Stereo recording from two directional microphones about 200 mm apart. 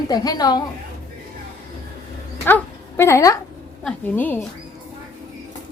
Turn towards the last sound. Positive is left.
turn(degrees=10)  # may be behind; listen again after turning